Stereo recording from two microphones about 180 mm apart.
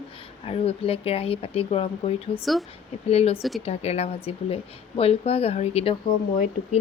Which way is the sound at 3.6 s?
35° left (ahead or behind).